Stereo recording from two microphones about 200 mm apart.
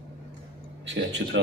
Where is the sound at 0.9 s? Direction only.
65° right (ahead or behind).